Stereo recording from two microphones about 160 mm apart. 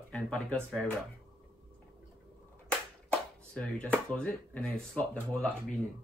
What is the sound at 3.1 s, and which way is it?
Speech, 5° left (ahead or behind).